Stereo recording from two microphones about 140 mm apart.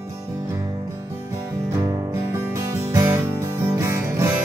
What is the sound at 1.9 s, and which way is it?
Music, 20° right (ahead or behind).